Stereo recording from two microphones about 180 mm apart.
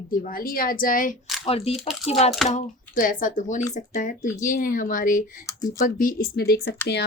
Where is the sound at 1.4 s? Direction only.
35° left (ahead or behind).